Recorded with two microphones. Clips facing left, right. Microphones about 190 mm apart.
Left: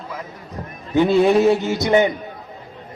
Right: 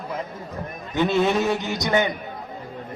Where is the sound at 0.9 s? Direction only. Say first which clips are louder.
Left 6 dB; 15° left (ahead or behind).